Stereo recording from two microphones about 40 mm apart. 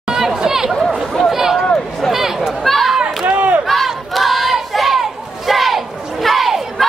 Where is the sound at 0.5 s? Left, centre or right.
Centre.